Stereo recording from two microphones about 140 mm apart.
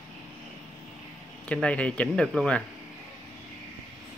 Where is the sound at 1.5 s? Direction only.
10° left (ahead or behind).